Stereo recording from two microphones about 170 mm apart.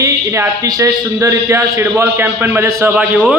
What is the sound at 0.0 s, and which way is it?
A man's voice, 15° right (ahead or behind).